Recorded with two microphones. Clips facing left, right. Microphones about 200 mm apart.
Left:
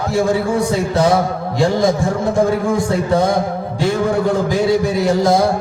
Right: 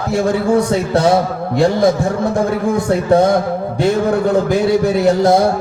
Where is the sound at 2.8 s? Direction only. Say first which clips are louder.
Right 3 dB; 60° right (ahead or behind).